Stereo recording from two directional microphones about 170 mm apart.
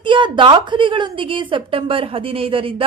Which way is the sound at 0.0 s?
30° right (ahead or behind).